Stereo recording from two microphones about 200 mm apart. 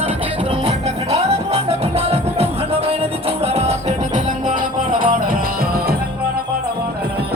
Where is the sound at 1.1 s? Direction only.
30° right (ahead or behind); by 6.0 s 45° right (ahead or behind).